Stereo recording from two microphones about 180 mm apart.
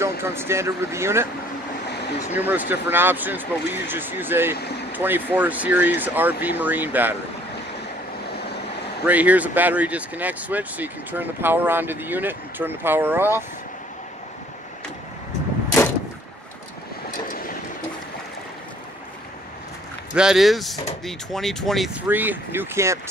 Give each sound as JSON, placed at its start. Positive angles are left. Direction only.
{"t": 0.2, "sound": "speech", "side_deg": -15}
{"t": 1.9, "sound": "a sound", "side_deg": 70}
{"t": 2.3, "sound": "speech", "side_deg": -10}
{"t": 4.6, "sound": "speech", "side_deg": 65}
{"t": 4.9, "sound": "speech", "side_deg": -10}
{"t": 9.0, "sound": "speech", "side_deg": -10}
{"t": 20.2, "sound": "speech", "side_deg": 0}